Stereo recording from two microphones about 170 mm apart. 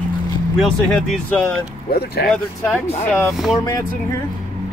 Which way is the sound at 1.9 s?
70° left (ahead or behind).